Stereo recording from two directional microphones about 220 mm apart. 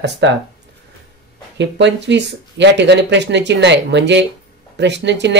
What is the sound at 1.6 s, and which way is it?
Speech, 55° right (ahead or behind).